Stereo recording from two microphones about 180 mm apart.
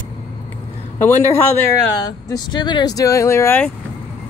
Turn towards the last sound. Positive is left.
turn(degrees=10)  # may be behind; listen again after turning